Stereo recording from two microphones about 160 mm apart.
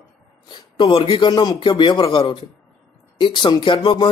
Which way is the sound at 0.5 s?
30° left (ahead or behind).